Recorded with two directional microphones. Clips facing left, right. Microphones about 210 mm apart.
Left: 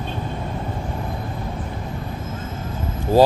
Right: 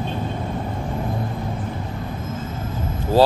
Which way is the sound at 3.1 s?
10° left (ahead or behind).